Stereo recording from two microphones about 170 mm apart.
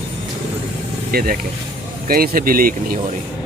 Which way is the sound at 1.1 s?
65° right (ahead or behind).